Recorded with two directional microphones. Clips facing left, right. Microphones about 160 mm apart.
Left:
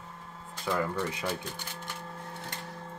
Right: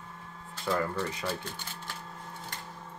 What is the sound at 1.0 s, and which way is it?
Speech, 15° left (ahead or behind).